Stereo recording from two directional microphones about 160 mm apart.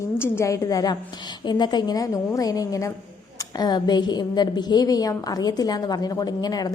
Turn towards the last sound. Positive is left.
turn(degrees=25)  # may be behind; listen again after turning